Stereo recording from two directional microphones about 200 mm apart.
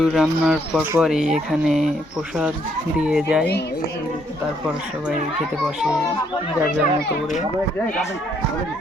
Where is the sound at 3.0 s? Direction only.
5° right (ahead or behind).